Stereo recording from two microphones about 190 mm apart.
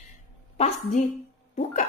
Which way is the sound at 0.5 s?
35° left (ahead or behind).